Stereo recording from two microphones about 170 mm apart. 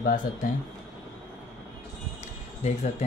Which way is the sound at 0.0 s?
55° left (ahead or behind).